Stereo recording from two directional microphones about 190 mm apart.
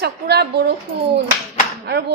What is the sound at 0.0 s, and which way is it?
Speech, 60° right (ahead or behind).